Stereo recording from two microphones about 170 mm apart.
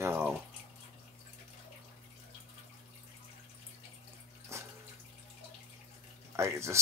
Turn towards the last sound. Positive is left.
turn(degrees=-15)  # may be behind; listen again after turning